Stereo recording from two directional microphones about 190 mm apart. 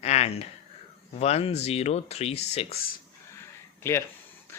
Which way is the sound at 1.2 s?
35° left (ahead or behind).